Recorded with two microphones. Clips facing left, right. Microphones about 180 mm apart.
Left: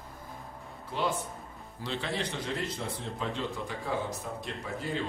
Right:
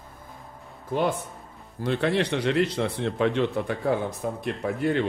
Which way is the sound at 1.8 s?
60° right (ahead or behind).